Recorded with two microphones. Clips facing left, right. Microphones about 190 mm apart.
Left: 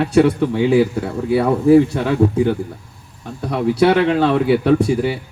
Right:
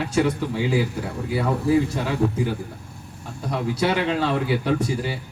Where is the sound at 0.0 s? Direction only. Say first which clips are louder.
Left 8 dB; 65° left (ahead or behind).